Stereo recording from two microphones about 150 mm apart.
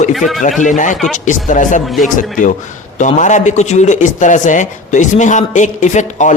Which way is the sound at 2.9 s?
55° left (ahead or behind).